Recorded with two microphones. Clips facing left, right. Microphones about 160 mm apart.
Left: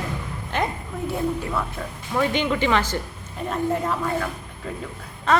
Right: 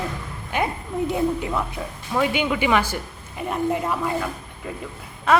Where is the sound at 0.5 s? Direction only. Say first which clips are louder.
Right 3 dB; 10° right (ahead or behind).